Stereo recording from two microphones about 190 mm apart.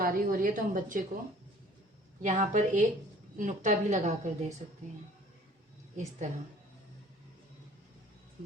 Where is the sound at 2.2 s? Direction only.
40° right (ahead or behind).